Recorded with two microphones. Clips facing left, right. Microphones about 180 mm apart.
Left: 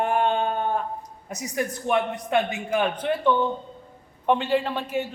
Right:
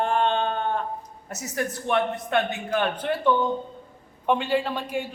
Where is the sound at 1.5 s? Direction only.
5° left (ahead or behind).